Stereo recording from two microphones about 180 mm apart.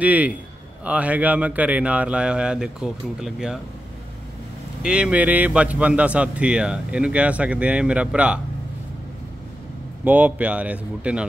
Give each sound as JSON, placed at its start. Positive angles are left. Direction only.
{"t": 0.0, "sound": "speech", "side_deg": -10}
{"t": 4.8, "sound": "speech", "side_deg": -5}
{"t": 10.0, "sound": "speech", "side_deg": -10}